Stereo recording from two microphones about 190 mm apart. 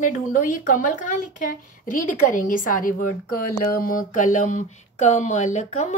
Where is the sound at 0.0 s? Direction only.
45° left (ahead or behind).